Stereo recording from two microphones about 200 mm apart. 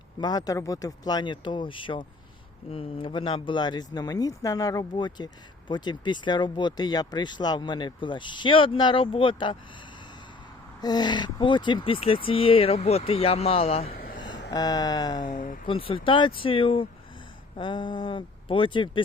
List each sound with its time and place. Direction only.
0.2 s speech: 20° left (ahead or behind)
10.8 s speech: 20° left (ahead or behind)
13.9 s a sound: 50° left (ahead or behind)
14.2 s a sound: 20° left (ahead or behind)
14.5 s speech: 20° left (ahead or behind)
15.3 s speech: 40° left (ahead or behind)
15.6 s speech: 25° left (ahead or behind)